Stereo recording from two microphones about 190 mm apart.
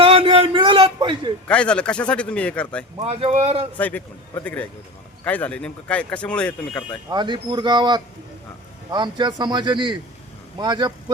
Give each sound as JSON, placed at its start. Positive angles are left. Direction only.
{"t": 0.0, "sound": "a sound", "side_deg": -30}
{"t": 1.5, "sound": "speech", "side_deg": 5}
{"t": 3.0, "sound": "speech", "side_deg": -30}
{"t": 3.8, "sound": "a man's voice", "side_deg": 10}
{"t": 5.2, "sound": "speech", "side_deg": 5}
{"t": 7.1, "sound": "a man's voice", "side_deg": -25}